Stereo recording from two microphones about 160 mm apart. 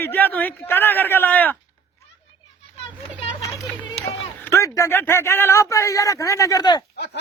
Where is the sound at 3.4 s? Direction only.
20° left (ahead or behind).